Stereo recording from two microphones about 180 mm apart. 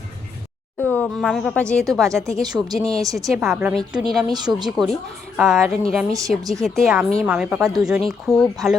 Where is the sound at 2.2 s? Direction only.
20° right (ahead or behind).